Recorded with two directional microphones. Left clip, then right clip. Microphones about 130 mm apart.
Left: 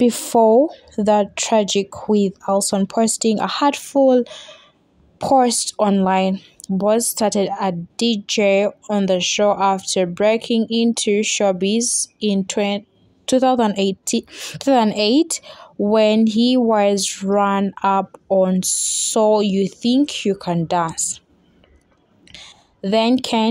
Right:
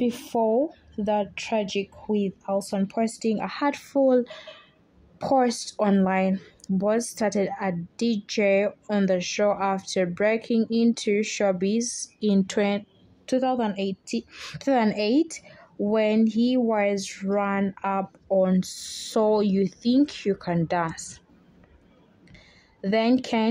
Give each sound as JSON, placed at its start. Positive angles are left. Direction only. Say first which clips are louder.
{"t": 0.0, "sound": "speech", "louder": "left 10 dB", "side_deg": 50}
{"t": 0.9, "sound": "a woman's voice", "louder": "left 9 dB", "side_deg": 45}
{"t": 13.2, "sound": "speech", "louder": "left 9 dB", "side_deg": 30}
{"t": 14.3, "sound": "speech", "louder": "left 7 dB", "side_deg": 20}
{"t": 18.4, "sound": "a woman's voice", "louder": "left 6 dB", "side_deg": 15}
{"t": 22.3, "sound": "a sound", "louder": "left 14 dB", "side_deg": 15}